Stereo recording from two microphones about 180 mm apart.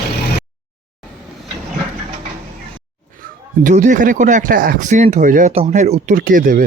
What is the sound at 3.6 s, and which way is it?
Speech, 45° right (ahead or behind).